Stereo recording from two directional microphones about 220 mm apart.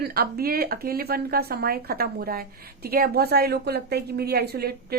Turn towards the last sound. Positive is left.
turn(degrees=-45)  # may be behind; listen again after turning